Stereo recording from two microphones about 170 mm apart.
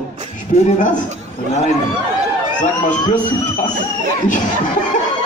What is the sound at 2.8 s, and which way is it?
Speech, 50° left (ahead or behind).